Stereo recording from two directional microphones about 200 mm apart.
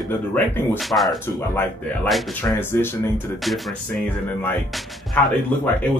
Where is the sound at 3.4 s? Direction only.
Centre (ahead or behind).